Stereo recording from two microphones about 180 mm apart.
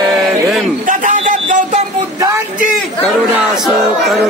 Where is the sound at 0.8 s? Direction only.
45° right (ahead or behind).